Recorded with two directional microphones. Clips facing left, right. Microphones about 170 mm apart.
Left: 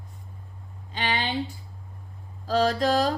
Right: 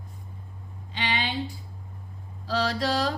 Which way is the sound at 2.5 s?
45° left (ahead or behind).